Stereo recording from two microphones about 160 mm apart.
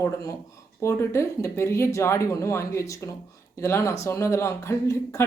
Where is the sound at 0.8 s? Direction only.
15° left (ahead or behind).